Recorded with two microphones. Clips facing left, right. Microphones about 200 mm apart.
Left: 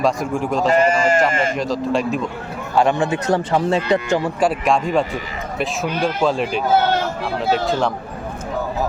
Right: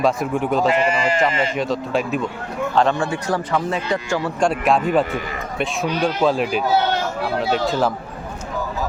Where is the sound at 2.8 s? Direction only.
15° left (ahead or behind).